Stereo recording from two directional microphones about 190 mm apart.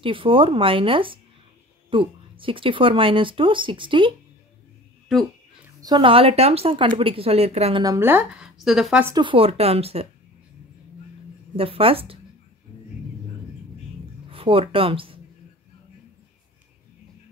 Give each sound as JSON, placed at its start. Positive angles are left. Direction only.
{"t": 0.0, "sound": "speech", "side_deg": -25}
{"t": 5.8, "sound": "speech", "side_deg": -20}
{"t": 7.8, "sound": "speech", "side_deg": -15}
{"t": 9.1, "sound": "speech", "side_deg": -25}
{"t": 11.5, "sound": "speech", "side_deg": -30}
{"t": 14.3, "sound": "speech", "side_deg": -30}